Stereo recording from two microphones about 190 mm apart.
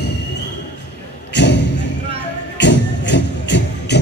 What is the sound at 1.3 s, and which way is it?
Music, 65° left (ahead or behind).